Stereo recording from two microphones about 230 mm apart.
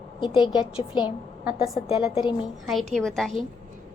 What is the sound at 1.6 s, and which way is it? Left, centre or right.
A woman's voice, centre.